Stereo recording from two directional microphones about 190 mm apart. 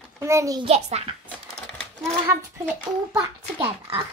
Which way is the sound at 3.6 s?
30° right (ahead or behind).